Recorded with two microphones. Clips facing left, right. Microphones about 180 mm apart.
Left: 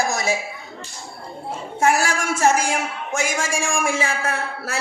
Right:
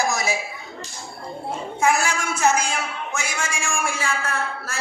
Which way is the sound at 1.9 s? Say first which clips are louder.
Left 2 dB; 85° left.